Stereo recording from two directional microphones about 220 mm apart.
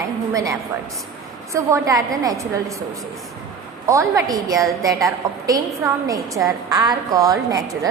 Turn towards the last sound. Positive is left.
turn(degrees=-15)  # may be behind; listen again after turning